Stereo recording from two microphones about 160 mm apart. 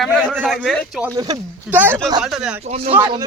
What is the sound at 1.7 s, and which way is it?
Speech, 10° right (ahead or behind).